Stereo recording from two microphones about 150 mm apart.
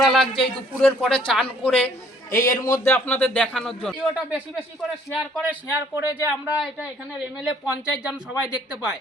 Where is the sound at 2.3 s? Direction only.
65° left (ahead or behind).